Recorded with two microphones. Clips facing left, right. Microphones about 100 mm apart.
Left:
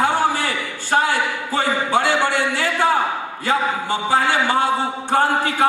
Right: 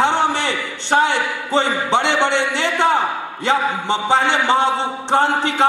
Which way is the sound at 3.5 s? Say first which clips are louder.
Right 2 dB; 25° right (ahead or behind).